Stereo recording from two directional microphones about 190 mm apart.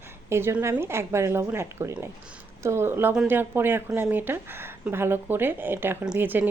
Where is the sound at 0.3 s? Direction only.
15° right (ahead or behind).